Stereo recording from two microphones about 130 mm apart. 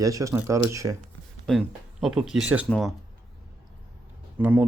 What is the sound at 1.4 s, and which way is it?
Speech, centre (ahead or behind).